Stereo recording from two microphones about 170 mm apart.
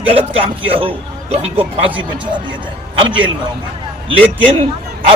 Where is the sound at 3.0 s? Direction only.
30° right (ahead or behind).